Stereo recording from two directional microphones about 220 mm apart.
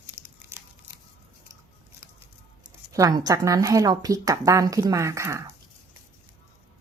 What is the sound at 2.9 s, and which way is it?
Speech, 15° right (ahead or behind).